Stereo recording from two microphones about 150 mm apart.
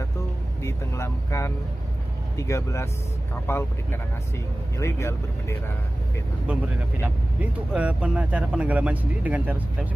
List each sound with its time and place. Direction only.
0.6 s vehicle: 20° left (ahead or behind)
2.3 s speech: 20° left (ahead or behind)
6.4 s speech: 10° right (ahead or behind)